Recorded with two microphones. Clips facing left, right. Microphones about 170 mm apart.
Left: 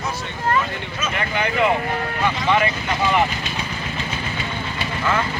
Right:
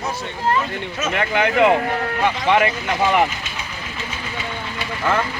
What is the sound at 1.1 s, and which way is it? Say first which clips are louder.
Speech: right 4 dB; 75° right (ahead or behind).